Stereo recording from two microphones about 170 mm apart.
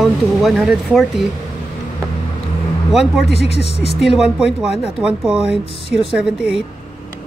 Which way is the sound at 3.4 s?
35° left (ahead or behind).